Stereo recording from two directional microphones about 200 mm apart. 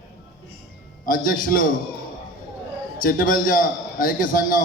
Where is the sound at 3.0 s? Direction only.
45° left (ahead or behind).